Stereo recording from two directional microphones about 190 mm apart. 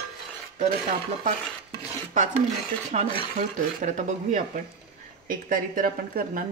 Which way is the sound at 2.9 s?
40° right (ahead or behind).